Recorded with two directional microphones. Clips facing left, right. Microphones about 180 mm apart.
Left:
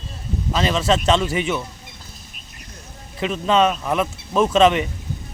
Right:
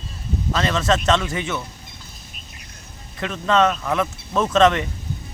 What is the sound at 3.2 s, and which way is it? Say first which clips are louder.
Speech: left 1 dB; 15° left (ahead or behind).